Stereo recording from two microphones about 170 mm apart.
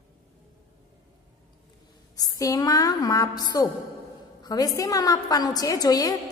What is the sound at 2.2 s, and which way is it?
A woman's voice, 20° left (ahead or behind).